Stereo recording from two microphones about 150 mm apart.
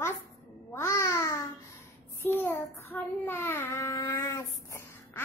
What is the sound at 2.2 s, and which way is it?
Child singing, 15° left (ahead or behind).